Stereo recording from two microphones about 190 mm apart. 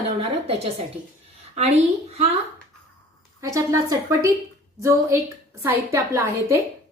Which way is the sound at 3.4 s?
15° right (ahead or behind).